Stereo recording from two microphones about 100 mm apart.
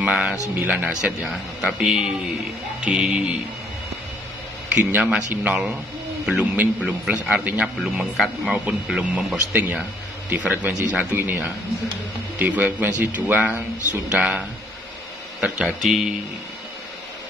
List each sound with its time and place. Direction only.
0.0 s a man's voice: 10° right (ahead or behind)
1.3 s a man's voice: 5° right (ahead or behind)
4.7 s a man's voice: 15° right (ahead or behind)
9.5 s a man's voice: 20° right (ahead or behind)
15.4 s speech: 5° right (ahead or behind)